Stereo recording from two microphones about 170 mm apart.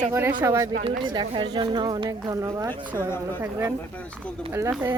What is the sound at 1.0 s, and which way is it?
Speech, 25° right (ahead or behind).